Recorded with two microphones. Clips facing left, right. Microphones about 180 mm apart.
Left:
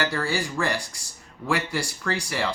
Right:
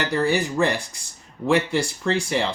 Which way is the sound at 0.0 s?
20° right (ahead or behind).